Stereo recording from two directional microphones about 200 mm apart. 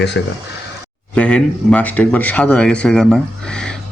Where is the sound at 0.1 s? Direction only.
65° left (ahead or behind).